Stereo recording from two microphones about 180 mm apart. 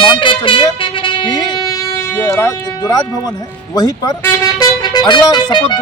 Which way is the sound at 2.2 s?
15° left (ahead or behind).